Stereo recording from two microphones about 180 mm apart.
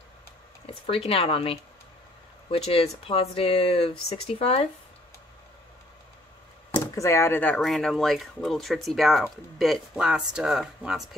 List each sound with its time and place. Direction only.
0.8 s speech: 30° left (ahead or behind)
6.7 s speech: 15° left (ahead or behind); by 11.1 s centre (ahead or behind)